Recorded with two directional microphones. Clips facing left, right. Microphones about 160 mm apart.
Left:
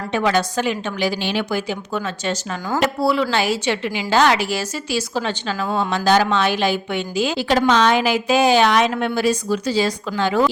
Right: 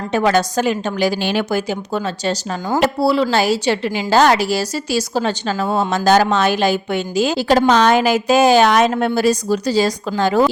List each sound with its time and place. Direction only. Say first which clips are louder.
0.1 s a woman's voice: right 3 dB; 40° right (ahead or behind)